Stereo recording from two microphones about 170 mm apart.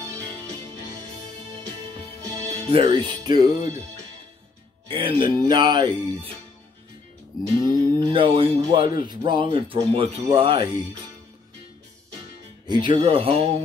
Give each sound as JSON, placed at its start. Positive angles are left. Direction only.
{"t": 2.5, "sound": "speech", "side_deg": -35}
{"t": 4.8, "sound": "speech", "side_deg": -30}
{"t": 7.6, "sound": "music", "side_deg": -25}
{"t": 8.5, "sound": "speech", "side_deg": -25}
{"t": 12.6, "sound": "speech", "side_deg": -25}